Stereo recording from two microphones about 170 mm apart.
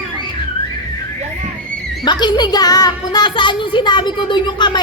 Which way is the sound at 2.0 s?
25° left (ahead or behind).